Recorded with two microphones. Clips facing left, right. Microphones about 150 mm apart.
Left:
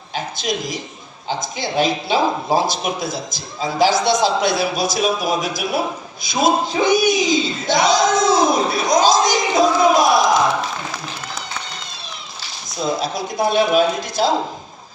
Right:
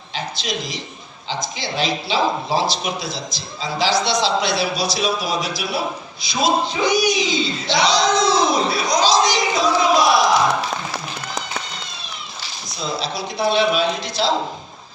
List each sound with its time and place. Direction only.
0.1 s speech: 50° left (ahead or behind)
12.8 s speech: 45° left (ahead or behind)